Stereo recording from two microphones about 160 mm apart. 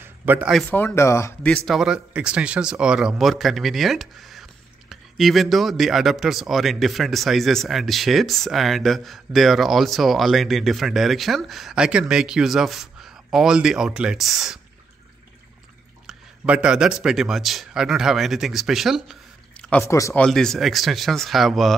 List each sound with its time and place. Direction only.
0.0 s a sound: 10° right (ahead or behind)
0.7 s speech: 10° left (ahead or behind)
1.7 s speech: 5° right (ahead or behind)
16.1 s speech: 5° right (ahead or behind)
19.5 s a sound: 10° left (ahead or behind)
19.9 s speech: 20° left (ahead or behind)
20.2 s speech: 5° left (ahead or behind)